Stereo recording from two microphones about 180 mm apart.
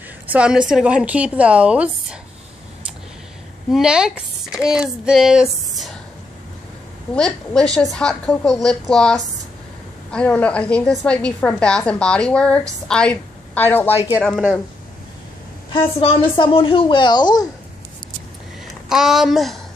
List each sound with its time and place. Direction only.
0.3 s a woman's voice: 5° right (ahead or behind)
3.7 s speech: 5° right (ahead or behind)
7.2 s a woman's voice: 5° left (ahead or behind)
16.0 s a woman's voice: 30° left (ahead or behind)
18.9 s a woman's voice: centre (ahead or behind)